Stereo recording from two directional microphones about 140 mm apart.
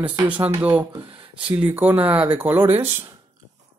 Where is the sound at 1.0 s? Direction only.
40° right (ahead or behind).